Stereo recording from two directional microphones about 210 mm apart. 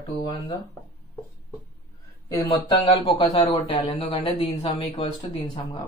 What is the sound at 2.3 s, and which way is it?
A man's voice, 15° left (ahead or behind).